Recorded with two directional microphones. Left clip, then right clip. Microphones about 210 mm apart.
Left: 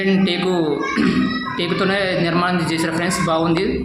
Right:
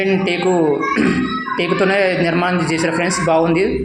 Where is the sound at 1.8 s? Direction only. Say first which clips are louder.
Right 4 dB; centre (ahead or behind).